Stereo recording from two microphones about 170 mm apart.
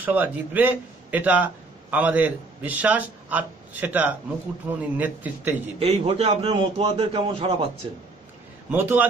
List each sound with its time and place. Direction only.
0.0 s a man's voice: 10° right (ahead or behind)
5.8 s a man's voice: 35° right (ahead or behind)
8.6 s a man's voice: 10° right (ahead or behind)